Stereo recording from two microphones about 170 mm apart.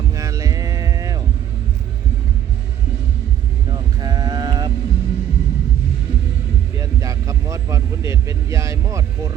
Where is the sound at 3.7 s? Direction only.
25° right (ahead or behind).